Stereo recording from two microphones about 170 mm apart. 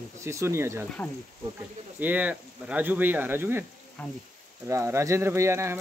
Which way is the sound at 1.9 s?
10° right (ahead or behind).